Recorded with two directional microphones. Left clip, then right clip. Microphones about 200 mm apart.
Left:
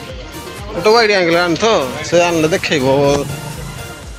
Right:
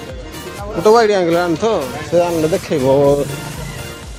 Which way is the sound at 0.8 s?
30° right (ahead or behind).